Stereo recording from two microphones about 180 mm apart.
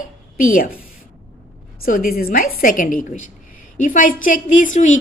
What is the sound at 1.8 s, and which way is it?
A woman's voice, 50° left (ahead or behind).